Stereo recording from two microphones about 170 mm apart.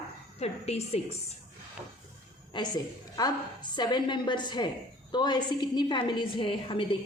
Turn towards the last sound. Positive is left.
turn(degrees=30)  # may be behind; listen again after turning